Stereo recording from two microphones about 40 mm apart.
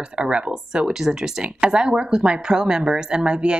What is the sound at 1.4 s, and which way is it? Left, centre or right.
Speech, right.